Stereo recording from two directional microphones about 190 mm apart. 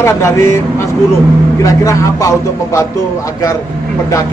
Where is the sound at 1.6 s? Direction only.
15° left (ahead or behind).